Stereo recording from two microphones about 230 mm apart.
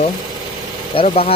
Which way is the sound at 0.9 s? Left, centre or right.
Left.